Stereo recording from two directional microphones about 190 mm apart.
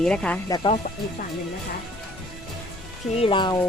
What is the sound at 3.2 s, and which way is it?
Speech, 25° left (ahead or behind).